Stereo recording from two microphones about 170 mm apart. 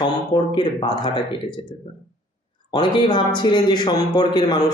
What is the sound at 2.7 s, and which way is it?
A man's voice, 25° left (ahead or behind).